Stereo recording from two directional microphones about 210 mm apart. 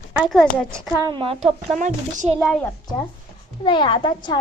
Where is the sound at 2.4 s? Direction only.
Centre (ahead or behind).